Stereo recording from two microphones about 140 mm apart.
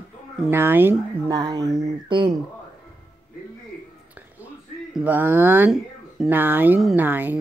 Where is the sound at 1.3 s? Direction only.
30° right (ahead or behind).